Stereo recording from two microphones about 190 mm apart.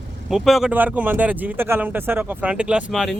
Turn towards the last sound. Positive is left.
turn(degrees=0)  # may be behind; listen again after turning